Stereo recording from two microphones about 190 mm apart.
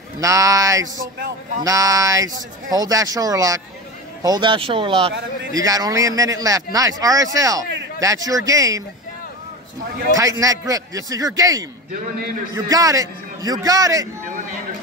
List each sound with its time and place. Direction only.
0.2 s speech: 15° right (ahead or behind)
10.1 s speech: 15° right (ahead or behind)